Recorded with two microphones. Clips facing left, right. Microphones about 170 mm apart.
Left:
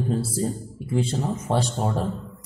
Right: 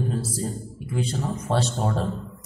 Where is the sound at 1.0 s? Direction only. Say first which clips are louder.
Left 1 dB; 25° left (ahead or behind).